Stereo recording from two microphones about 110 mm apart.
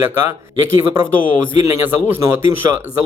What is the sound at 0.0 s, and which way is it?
Speech, 20° right (ahead or behind).